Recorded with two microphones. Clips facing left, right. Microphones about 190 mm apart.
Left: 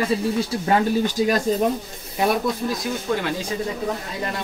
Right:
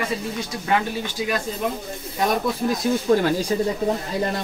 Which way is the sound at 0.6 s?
40° left (ahead or behind).